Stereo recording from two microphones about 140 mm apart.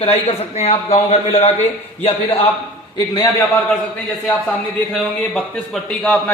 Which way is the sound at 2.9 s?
30° left (ahead or behind).